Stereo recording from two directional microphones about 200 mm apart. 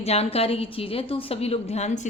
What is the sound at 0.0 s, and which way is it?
A woman's voice, 30° left (ahead or behind).